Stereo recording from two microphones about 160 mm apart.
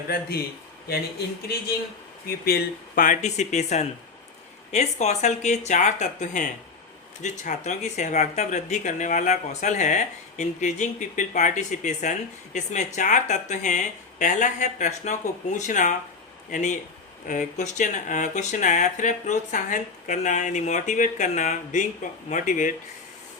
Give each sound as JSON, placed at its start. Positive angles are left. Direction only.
{"t": 0.1, "sound": "speech", "side_deg": 75}
{"t": 2.2, "sound": "speech", "side_deg": 70}